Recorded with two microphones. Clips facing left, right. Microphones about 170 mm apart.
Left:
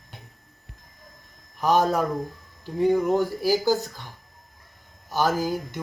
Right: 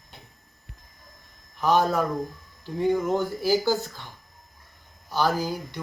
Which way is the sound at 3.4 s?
40° left (ahead or behind).